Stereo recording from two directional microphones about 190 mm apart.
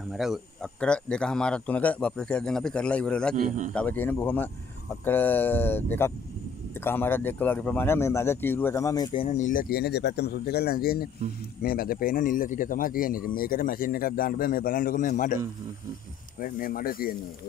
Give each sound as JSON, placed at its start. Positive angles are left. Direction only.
{"t": 0.1, "sound": "speech", "side_deg": 0}
{"t": 3.3, "sound": "speech", "side_deg": -40}
{"t": 3.7, "sound": "speech", "side_deg": 10}
{"t": 16.3, "sound": "speech", "side_deg": 50}